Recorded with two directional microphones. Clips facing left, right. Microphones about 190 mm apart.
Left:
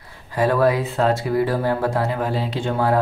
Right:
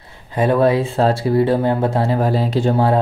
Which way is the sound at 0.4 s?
25° right (ahead or behind).